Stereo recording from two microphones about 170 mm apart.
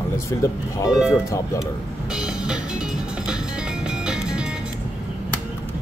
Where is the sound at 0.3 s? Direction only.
15° left (ahead or behind).